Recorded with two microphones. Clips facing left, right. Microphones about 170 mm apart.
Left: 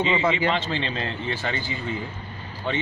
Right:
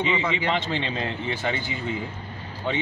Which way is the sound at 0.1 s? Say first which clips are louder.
Left 3 dB; 40° left (ahead or behind).